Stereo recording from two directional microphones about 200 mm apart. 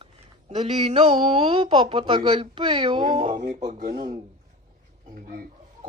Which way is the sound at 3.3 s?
40° right (ahead or behind).